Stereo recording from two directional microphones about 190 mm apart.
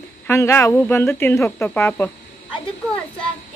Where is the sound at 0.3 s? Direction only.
15° left (ahead or behind).